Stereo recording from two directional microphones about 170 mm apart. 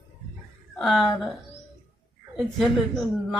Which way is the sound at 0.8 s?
Centre (ahead or behind).